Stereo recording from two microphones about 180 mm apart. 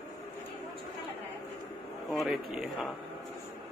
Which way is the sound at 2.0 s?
Centre (ahead or behind).